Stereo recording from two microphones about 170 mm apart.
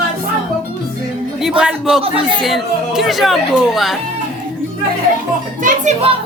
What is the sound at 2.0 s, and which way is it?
Speech, 30° right (ahead or behind).